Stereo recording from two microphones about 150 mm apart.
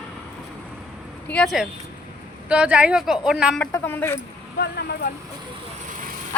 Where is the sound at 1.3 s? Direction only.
5° left (ahead or behind).